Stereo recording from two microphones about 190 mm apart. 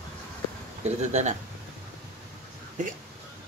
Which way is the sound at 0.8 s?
35° right (ahead or behind).